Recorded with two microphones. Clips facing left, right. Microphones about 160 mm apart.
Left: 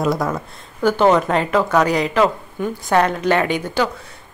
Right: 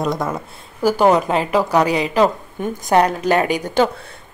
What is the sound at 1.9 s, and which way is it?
Speech, 30° right (ahead or behind).